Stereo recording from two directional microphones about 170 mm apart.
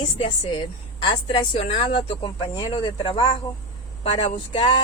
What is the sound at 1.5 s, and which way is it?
Speech, 40° left (ahead or behind).